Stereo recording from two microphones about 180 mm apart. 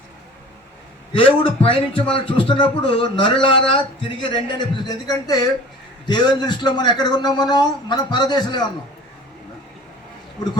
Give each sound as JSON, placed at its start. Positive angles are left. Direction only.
{"t": 1.1, "sound": "a man's voice", "side_deg": 30}